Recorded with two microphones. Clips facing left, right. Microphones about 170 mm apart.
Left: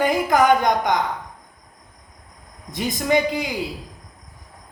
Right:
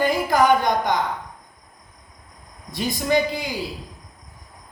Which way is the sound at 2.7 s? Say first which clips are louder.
Left 1 dB; 15° left (ahead or behind).